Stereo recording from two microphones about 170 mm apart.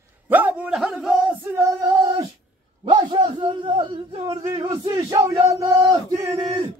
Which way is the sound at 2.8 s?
25° right (ahead or behind).